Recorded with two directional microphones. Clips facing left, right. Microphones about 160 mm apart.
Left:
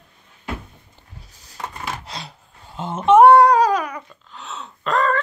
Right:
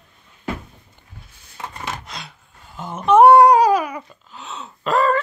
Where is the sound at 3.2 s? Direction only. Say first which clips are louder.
Right 2 dB; 10° right (ahead or behind).